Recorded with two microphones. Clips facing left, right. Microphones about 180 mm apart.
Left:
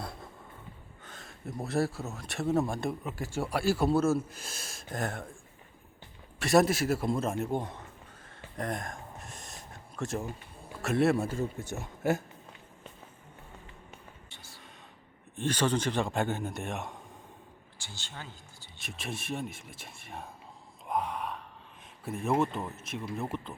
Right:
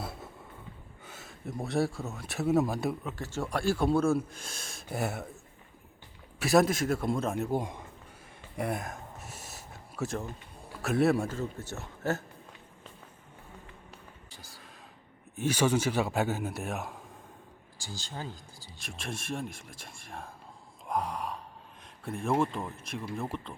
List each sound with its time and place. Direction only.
0.0 s a sound: 5° right (ahead or behind)
1.0 s speech: 5° right (ahead or behind)
3.0 s speech: 10° left (ahead or behind); by 5.3 s 5° right (ahead or behind)
6.4 s speech: centre (ahead or behind)
7.6 s speech: 10° right (ahead or behind)
8.5 s gasp: 10° right (ahead or behind)
10.8 s speech: centre (ahead or behind)
11.3 s speech: 15° left (ahead or behind)
15.4 s speech: 10° right (ahead or behind)
17.7 s speech: 35° right (ahead or behind)
18.8 s speech: centre (ahead or behind)
20.9 s gasp: centre (ahead or behind)
22.0 s speech: 5° left (ahead or behind)